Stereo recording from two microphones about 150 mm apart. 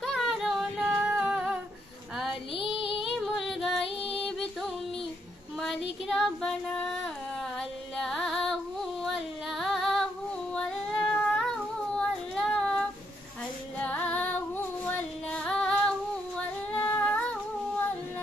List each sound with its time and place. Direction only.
0.0 s a sound: centre (ahead or behind)
0.8 s music: 5° right (ahead or behind)
2.5 s female singing: 35° left (ahead or behind)
3.0 s music: centre (ahead or behind)
5.6 s female singing: centre (ahead or behind)
10.5 s singing: 5° left (ahead or behind)
13.7 s music: 10° left (ahead or behind)
16.7 s humming: 10° left (ahead or behind)